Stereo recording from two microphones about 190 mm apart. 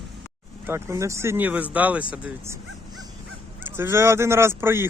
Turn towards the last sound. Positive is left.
turn(degrees=-10)  # may be behind; listen again after turning